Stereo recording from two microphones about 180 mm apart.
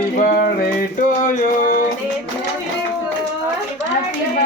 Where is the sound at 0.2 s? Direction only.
55° left (ahead or behind).